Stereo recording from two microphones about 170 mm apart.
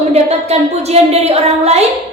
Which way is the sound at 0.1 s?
40° right (ahead or behind).